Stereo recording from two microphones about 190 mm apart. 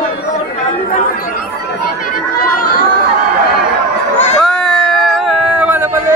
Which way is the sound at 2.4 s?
50° left (ahead or behind).